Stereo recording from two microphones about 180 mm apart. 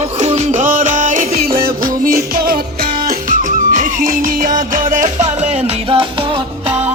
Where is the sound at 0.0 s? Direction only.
35° right (ahead or behind).